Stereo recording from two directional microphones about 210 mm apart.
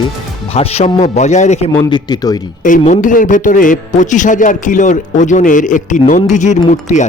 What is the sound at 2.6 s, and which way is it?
A man's voice, 35° left (ahead or behind).